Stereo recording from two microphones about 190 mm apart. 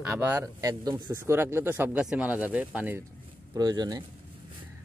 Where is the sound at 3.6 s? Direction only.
20° right (ahead or behind).